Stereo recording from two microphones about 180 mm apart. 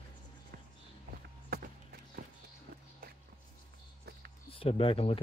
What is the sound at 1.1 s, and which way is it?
Run, 55° right (ahead or behind).